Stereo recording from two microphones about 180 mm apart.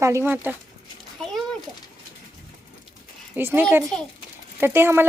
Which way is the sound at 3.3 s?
10° right (ahead or behind).